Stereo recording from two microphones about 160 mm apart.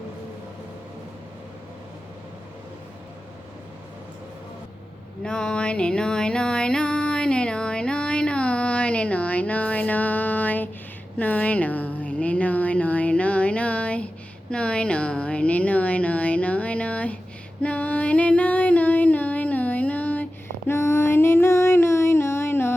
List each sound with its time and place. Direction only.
5.2 s music: 5° left (ahead or behind)
11.2 s a sound: 10° left (ahead or behind)
17.6 s music: 10° left (ahead or behind)